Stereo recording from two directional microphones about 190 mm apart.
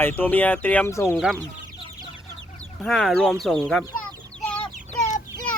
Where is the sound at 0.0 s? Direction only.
10° left (ahead or behind).